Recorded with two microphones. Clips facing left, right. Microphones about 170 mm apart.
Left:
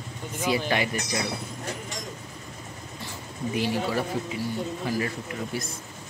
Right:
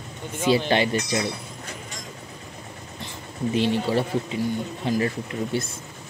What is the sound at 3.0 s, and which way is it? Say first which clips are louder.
Speech: right 5 dB; 25° right (ahead or behind).